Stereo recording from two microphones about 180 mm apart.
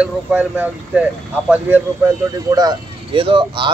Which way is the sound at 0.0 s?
5° right (ahead or behind).